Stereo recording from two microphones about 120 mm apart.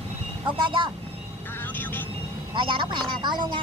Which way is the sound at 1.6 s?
15° left (ahead or behind).